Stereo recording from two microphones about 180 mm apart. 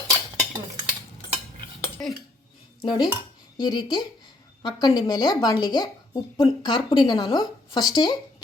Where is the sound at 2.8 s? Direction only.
20° left (ahead or behind).